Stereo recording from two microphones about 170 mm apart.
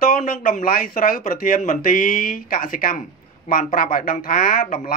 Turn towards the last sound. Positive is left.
turn(degrees=55)  # may be behind; listen again after turning